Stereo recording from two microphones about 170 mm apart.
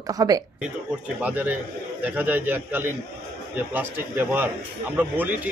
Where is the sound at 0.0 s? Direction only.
20° right (ahead or behind).